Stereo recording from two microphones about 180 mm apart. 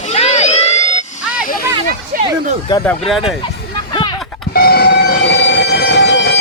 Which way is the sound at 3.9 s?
25° left (ahead or behind).